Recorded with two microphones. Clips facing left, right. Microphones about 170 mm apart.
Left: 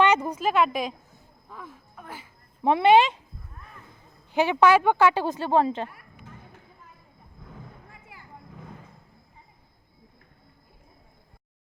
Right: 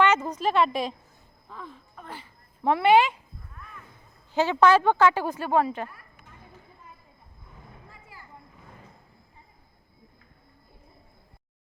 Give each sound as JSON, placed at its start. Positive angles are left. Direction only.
{"t": 0.0, "sound": "a woman's voice", "side_deg": 15}
{"t": 2.6, "sound": "speech", "side_deg": 20}
{"t": 4.3, "sound": "a woman's voice", "side_deg": 15}
{"t": 5.1, "sound": "speech", "side_deg": 25}